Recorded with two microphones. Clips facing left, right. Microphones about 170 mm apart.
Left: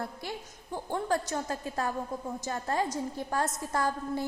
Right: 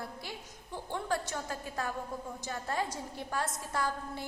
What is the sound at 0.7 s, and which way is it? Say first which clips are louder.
A woman's voice: left 4 dB; 45° left (ahead or behind).